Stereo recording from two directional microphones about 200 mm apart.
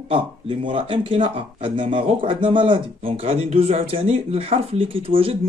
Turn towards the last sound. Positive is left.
turn(degrees=-30)  # may be behind; listen again after turning